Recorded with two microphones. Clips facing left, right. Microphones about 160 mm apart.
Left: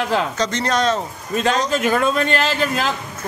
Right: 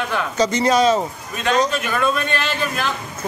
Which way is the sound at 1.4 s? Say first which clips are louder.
Even; 40° left (ahead or behind).